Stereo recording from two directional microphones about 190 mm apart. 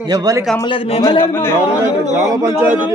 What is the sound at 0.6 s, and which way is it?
Speech, 25° left (ahead or behind).